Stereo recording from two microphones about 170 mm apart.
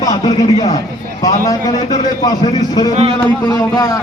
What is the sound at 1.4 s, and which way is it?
Speech, 20° left (ahead or behind).